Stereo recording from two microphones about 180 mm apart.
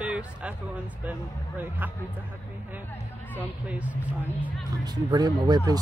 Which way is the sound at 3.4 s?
10° right (ahead or behind).